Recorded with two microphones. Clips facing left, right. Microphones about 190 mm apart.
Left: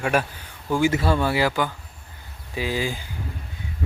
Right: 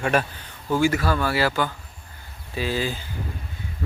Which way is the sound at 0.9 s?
25° left (ahead or behind).